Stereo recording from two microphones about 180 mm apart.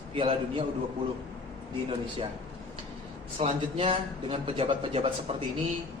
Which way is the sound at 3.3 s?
30° right (ahead or behind).